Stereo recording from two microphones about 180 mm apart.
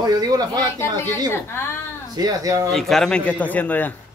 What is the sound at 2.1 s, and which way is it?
Speech, 20° right (ahead or behind).